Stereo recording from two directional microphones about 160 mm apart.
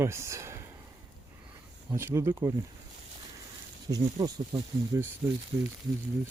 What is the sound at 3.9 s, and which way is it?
Speech, 25° right (ahead or behind).